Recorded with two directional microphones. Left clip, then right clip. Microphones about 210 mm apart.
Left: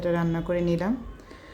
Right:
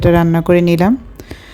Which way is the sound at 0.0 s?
45° right (ahead or behind).